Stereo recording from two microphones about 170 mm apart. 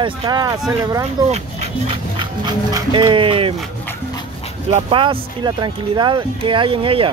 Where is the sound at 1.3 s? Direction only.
35° right (ahead or behind).